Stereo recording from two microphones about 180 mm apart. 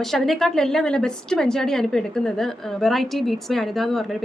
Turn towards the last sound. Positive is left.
turn(degrees=0)  # may be behind; listen again after turning